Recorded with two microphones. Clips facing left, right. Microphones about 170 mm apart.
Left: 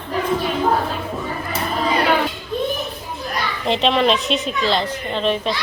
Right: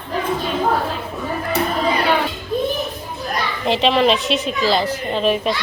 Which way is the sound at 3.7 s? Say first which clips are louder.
Right 1 dB; centre (ahead or behind).